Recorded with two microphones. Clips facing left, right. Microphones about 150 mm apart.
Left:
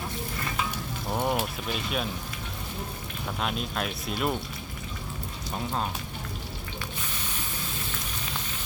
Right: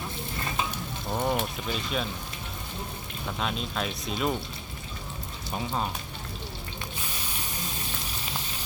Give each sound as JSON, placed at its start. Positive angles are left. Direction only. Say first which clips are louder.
{"t": 1.1, "sound": "speech", "louder": "even", "side_deg": 5}
{"t": 3.4, "sound": "speech", "louder": "even", "side_deg": 5}
{"t": 5.5, "sound": "speech", "louder": "even", "side_deg": 0}